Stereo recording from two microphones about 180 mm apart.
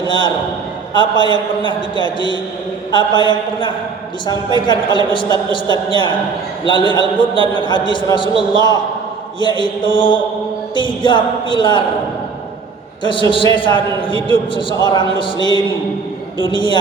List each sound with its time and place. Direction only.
0.0 s a sound: 25° left (ahead or behind)
0.9 s a man's voice: 25° left (ahead or behind)
10.8 s a man's voice: 25° left (ahead or behind)
13.0 s a man's voice: 25° left (ahead or behind)